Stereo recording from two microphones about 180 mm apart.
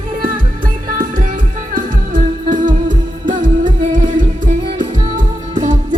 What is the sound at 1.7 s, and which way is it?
Music, 45° right (ahead or behind).